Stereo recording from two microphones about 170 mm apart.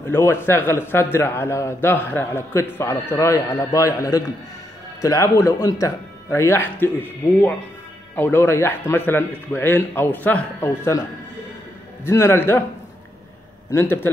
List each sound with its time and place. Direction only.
0.1 s a man's voice: 15° left (ahead or behind)
13.7 s a man's voice: 15° left (ahead or behind)